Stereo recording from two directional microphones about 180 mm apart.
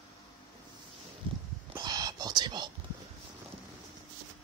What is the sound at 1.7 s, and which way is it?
Whispering, 20° right (ahead or behind).